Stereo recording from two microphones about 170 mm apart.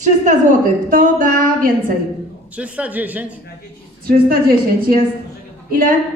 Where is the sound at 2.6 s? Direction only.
10° right (ahead or behind).